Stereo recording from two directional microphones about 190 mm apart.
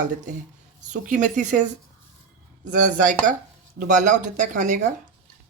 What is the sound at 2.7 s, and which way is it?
Speech, 40° right (ahead or behind).